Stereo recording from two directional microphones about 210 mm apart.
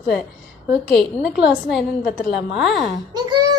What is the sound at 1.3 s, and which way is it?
Speech, 50° left (ahead or behind).